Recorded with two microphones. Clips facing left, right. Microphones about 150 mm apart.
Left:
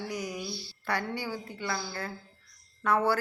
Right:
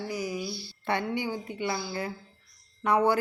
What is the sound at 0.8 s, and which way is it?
A woman's voice, 20° right (ahead or behind).